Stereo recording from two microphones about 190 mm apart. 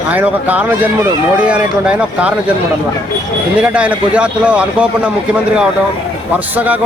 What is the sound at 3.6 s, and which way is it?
Speech, 5° right (ahead or behind).